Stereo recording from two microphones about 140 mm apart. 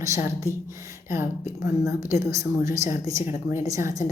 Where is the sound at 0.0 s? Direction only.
20° right (ahead or behind).